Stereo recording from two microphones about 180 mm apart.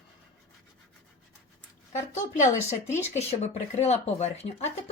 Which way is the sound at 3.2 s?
35° left (ahead or behind).